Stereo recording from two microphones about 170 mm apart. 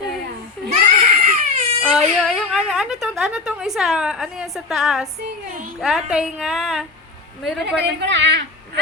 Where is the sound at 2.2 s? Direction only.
Centre (ahead or behind).